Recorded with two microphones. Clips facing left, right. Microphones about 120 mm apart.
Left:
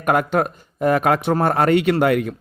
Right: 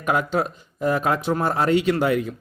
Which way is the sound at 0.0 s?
55° left (ahead or behind).